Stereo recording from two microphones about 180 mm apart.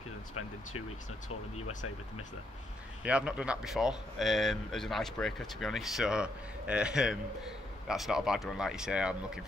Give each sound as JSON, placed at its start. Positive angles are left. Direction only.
{"t": 3.0, "sound": "speech", "side_deg": -5}